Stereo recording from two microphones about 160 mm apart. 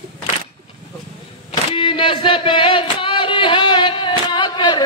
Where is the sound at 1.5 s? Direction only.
35° left (ahead or behind).